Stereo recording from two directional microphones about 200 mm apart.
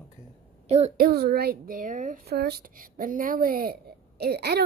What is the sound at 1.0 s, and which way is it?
A woman's voice, 50° right (ahead or behind).